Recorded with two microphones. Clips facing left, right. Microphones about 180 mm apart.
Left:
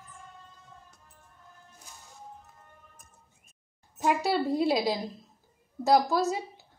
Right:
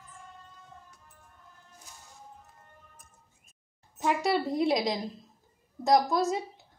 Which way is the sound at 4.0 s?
5° left (ahead or behind).